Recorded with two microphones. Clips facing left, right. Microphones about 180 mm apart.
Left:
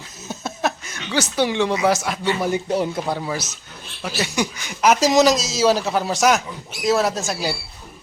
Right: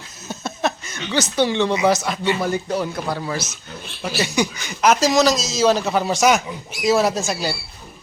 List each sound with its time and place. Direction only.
0.3 s a sound: 5° left (ahead or behind)
1.8 s speech: 5° left (ahead or behind)
2.4 s speech: 20° left (ahead or behind)
3.2 s a man's voice: 10° left (ahead or behind)